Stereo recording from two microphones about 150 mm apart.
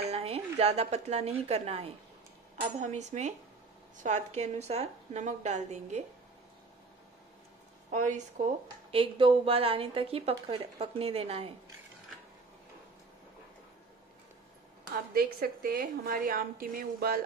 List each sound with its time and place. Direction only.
0.0 s speech: 45° right (ahead or behind)
2.9 s a woman's voice: 50° right (ahead or behind)
7.9 s a woman's voice: 55° right (ahead or behind)
8.9 s a woman's voice: 35° right (ahead or behind)
15.1 s a woman's voice: 90° right; by 17.2 s 75° right (ahead or behind)